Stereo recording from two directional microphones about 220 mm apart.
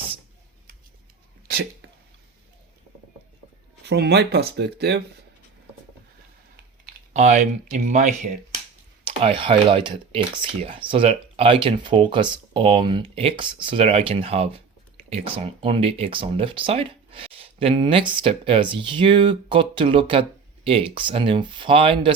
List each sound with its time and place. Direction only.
3.8 s speech: 50° right (ahead or behind)
7.1 s speech: 30° right (ahead or behind)